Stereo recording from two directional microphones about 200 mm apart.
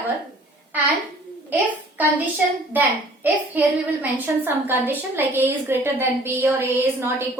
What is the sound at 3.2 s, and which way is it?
A woman's voice, 10° right (ahead or behind).